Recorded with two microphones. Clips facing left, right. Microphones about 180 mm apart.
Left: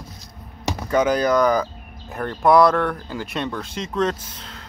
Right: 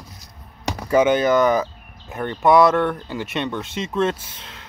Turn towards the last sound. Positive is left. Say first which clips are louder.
# left 2 dB
turn(degrees=-25)  # may be behind; listen again after turning